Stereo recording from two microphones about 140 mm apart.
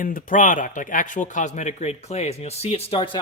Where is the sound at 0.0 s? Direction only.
70° left (ahead or behind).